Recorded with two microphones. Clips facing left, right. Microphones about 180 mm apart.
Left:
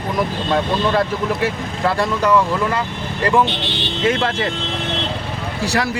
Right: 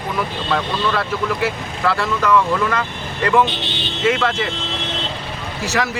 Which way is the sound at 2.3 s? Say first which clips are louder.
Right 2 dB; 25° left (ahead or behind).